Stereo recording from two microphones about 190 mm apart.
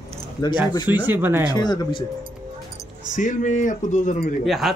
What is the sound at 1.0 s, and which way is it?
Speech, 10° right (ahead or behind).